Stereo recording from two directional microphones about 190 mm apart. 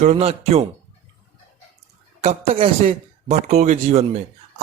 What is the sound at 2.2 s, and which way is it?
Speech, 30° right (ahead or behind).